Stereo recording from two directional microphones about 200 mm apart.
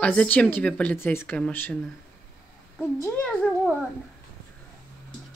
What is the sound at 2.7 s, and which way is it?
Speech, 10° left (ahead or behind).